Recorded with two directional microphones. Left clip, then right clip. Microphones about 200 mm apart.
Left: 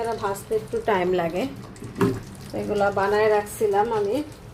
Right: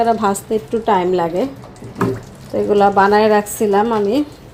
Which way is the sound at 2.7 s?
30° right (ahead or behind).